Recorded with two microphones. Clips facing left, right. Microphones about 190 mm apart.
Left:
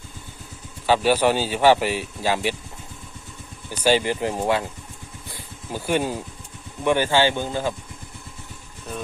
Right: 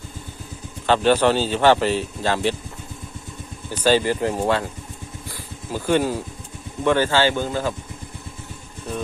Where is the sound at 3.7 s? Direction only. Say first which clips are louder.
Right 2 dB; 15° left (ahead or behind).